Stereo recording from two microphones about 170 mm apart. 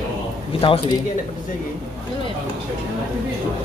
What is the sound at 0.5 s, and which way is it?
Speech, 30° left (ahead or behind).